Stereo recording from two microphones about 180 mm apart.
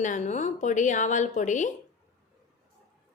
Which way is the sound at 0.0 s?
40° left (ahead or behind).